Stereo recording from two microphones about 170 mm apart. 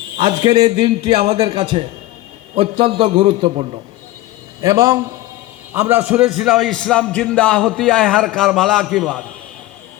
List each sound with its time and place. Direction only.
0.2 s a man's voice: 25° right (ahead or behind)
4.6 s a man's voice: 20° right (ahead or behind)
6.3 s a man's voice: centre (ahead or behind)